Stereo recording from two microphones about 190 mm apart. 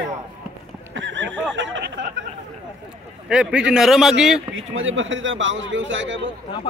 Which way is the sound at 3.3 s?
5° right (ahead or behind).